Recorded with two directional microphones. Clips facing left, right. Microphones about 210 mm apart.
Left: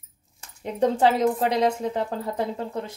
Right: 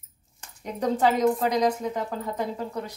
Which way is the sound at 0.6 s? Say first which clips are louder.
Left 3 dB; 30° left (ahead or behind).